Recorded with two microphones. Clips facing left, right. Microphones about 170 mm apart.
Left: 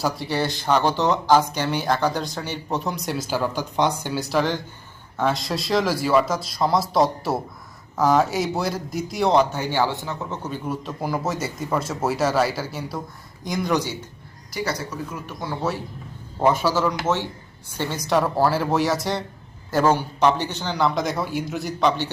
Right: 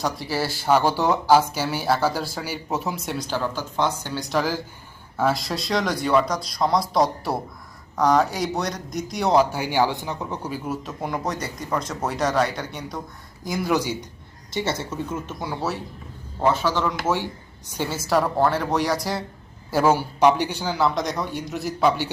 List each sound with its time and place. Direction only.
0.0 s a man's voice: centre (ahead or behind)
14.5 s speech: 25° right (ahead or behind)
16.4 s a man's voice: 10° left (ahead or behind)
17.7 s a man's voice: 5° right (ahead or behind)